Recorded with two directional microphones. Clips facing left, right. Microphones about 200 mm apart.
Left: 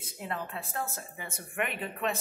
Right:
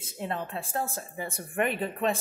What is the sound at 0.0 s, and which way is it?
Speech, 25° right (ahead or behind).